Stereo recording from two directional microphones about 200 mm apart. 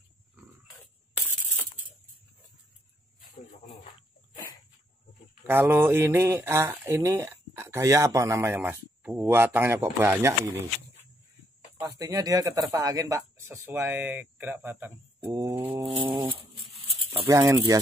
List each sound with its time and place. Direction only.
5.5 s speech: 10° right (ahead or behind)
12.0 s speech: 15° right (ahead or behind)
15.1 s bird: 20° right (ahead or behind)
15.8 s a sound: 25° right (ahead or behind)
17.3 s speech: 15° right (ahead or behind)